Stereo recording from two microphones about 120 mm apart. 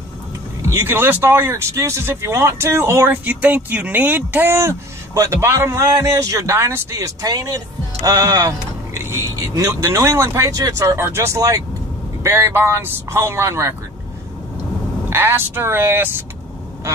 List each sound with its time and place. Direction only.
0.6 s speech: 20° right (ahead or behind)
15.0 s speech: 20° right (ahead or behind)